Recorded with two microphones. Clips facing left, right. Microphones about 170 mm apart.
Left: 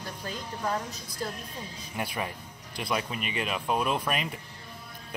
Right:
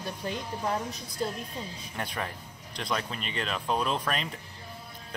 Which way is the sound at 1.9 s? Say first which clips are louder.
Left 2 dB; 10° left (ahead or behind).